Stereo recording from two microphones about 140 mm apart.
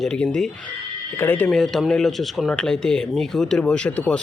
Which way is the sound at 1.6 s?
Centre (ahead or behind).